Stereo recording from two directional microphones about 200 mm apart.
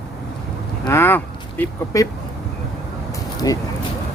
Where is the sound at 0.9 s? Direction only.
10° left (ahead or behind).